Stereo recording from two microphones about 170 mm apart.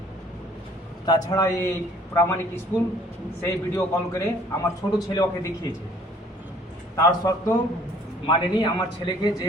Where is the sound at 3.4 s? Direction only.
15° left (ahead or behind).